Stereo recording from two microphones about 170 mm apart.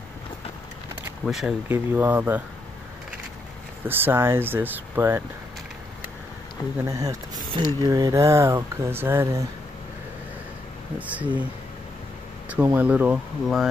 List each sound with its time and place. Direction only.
1.2 s speech: 5° right (ahead or behind)
3.8 s speech: 10° right (ahead or behind)
6.8 s speech: 20° right (ahead or behind)
11.0 s speech: 10° right (ahead or behind)
12.4 s speech: 10° right (ahead or behind)